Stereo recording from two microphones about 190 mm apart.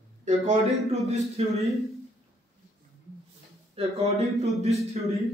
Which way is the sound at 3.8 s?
35° right (ahead or behind).